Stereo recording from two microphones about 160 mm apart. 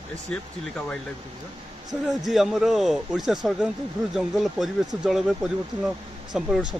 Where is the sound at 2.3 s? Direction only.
Centre (ahead or behind).